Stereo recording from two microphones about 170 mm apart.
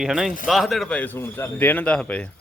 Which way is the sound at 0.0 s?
5° right (ahead or behind).